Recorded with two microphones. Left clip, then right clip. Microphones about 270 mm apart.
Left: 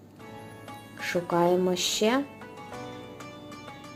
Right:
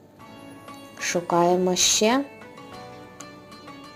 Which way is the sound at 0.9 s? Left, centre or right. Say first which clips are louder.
Right 4 dB; centre.